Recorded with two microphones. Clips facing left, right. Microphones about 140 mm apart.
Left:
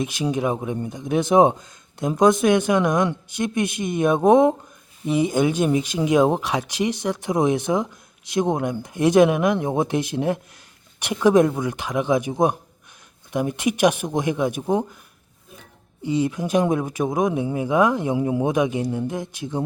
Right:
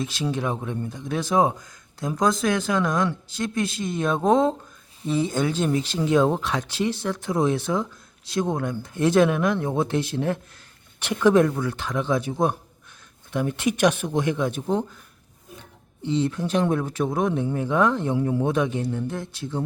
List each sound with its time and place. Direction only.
0.0 s speech: 15° left (ahead or behind)
16.0 s speech: 10° left (ahead or behind)